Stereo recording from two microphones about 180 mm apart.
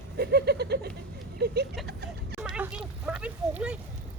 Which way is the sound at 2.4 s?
5° right (ahead or behind).